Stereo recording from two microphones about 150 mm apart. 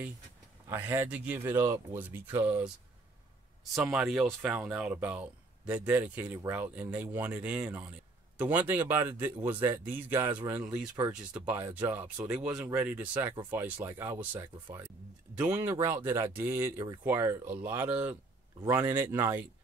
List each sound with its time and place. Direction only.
0.7 s speech: 15° right (ahead or behind)
3.7 s speech: 5° right (ahead or behind)